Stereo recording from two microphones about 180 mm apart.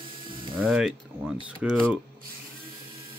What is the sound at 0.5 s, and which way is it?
Speech, centre (ahead or behind).